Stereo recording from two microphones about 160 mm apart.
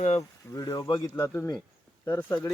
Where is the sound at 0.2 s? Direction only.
25° left (ahead or behind).